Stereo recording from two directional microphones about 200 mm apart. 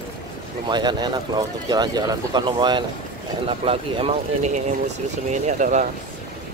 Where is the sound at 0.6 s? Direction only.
20° right (ahead or behind); by 5.8 s 35° right (ahead or behind).